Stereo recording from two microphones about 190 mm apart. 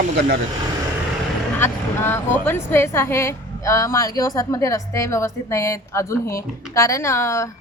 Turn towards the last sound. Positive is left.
turn(degrees=15)  # may be behind; listen again after turning